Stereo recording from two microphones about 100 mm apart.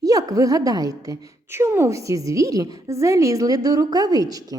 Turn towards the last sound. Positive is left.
turn(degrees=-40)  # may be behind; listen again after turning